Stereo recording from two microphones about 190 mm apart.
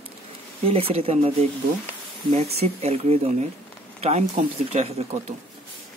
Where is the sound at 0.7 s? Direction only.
30° right (ahead or behind).